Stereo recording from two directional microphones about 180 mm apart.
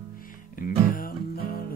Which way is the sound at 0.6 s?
50° left (ahead or behind).